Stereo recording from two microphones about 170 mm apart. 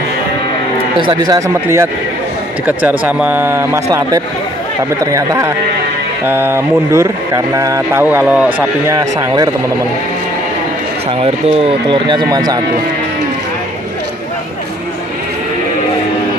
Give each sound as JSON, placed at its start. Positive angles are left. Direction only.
{"t": 1.0, "sound": "speech", "side_deg": -25}
{"t": 8.9, "sound": "speech", "side_deg": -25}
{"t": 11.2, "sound": "speech", "side_deg": -30}